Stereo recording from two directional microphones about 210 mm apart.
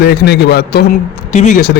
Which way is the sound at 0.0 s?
50° left (ahead or behind).